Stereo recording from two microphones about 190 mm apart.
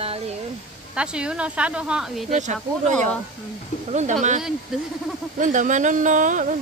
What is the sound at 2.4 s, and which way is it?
Speech, 40° right (ahead or behind).